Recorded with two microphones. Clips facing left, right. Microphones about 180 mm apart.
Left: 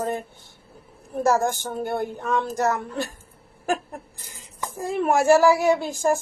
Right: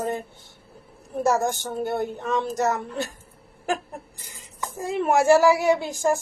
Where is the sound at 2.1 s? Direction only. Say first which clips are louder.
Even; 15° right (ahead or behind).